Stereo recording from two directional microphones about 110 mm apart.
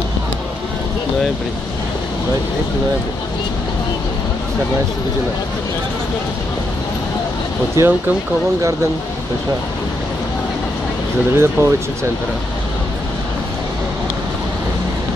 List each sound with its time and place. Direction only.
7.8 s speech: 25° right (ahead or behind)
11.3 s speech: 25° right (ahead or behind)